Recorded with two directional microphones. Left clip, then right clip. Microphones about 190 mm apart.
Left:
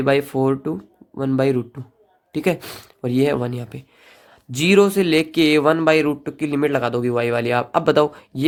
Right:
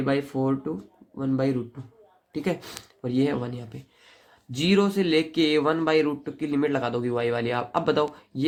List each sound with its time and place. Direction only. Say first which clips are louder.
0.0 s speech: left 8 dB; 50° left (ahead or behind)